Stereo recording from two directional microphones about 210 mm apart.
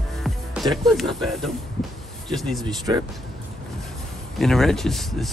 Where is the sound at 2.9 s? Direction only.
15° right (ahead or behind).